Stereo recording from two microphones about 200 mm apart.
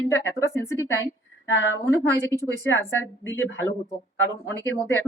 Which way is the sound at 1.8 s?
15° left (ahead or behind).